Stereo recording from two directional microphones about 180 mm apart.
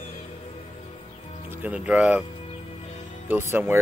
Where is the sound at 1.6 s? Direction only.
5° right (ahead or behind).